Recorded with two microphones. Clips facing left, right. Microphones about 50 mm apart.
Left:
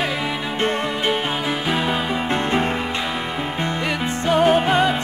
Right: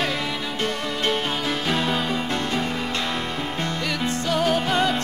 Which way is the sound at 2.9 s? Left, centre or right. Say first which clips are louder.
Left 2 dB; centre.